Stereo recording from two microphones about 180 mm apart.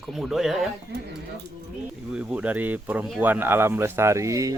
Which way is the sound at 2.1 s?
5° right (ahead or behind).